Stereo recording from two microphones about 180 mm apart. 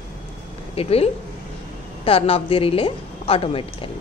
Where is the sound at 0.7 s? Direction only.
35° left (ahead or behind).